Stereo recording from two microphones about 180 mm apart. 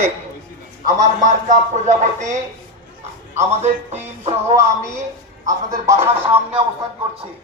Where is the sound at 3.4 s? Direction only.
35° right (ahead or behind).